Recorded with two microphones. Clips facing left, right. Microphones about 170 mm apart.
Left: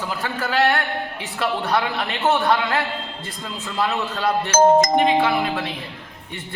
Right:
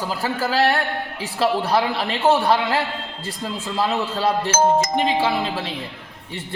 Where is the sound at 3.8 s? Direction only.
30° right (ahead or behind).